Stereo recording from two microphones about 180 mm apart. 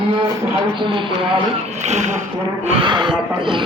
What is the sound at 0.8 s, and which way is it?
Speech, 25° right (ahead or behind).